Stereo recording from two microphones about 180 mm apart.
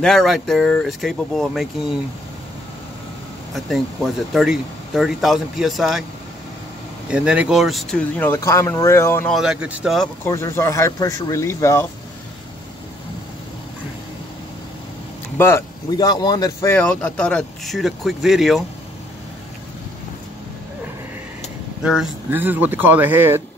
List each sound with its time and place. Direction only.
0.0 s speech: centre (ahead or behind)
3.5 s speech: centre (ahead or behind)
7.1 s speech: 5° right (ahead or behind)
8.2 s speech: 15° left (ahead or behind)
9.3 s speech: 5° right (ahead or behind)
10.2 s speech: 15° left (ahead or behind)
15.3 s speech: 15° left (ahead or behind)
16.7 s speech: 10° left (ahead or behind)
21.8 s speech: 5° right (ahead or behind)